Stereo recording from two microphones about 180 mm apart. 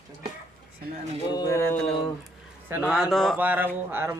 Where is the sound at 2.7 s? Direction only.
5° right (ahead or behind).